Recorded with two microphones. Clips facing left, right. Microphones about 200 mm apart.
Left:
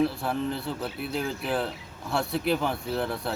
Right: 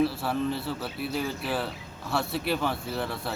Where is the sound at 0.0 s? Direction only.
5° right (ahead or behind).